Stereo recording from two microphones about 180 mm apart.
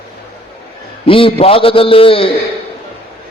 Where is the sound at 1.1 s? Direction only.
30° left (ahead or behind).